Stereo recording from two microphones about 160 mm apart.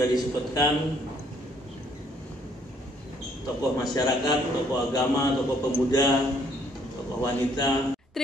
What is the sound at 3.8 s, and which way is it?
A man's voice, 25° left (ahead or behind).